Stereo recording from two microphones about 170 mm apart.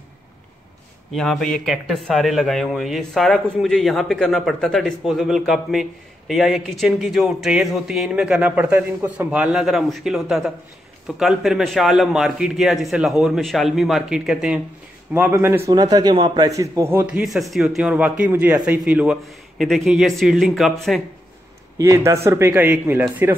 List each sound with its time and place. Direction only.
1.1 s a man's voice: centre (ahead or behind)
21.7 s a man's voice: 20° right (ahead or behind)